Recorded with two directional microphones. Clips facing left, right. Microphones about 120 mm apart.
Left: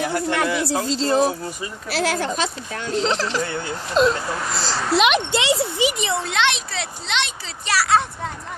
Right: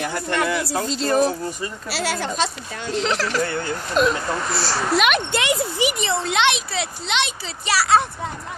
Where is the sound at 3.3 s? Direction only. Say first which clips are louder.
Right 2 dB; 15° left (ahead or behind).